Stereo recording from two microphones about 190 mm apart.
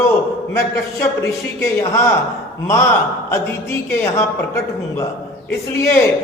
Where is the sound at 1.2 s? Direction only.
15° left (ahead or behind).